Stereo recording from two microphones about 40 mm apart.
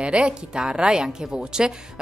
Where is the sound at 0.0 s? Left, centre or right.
Right.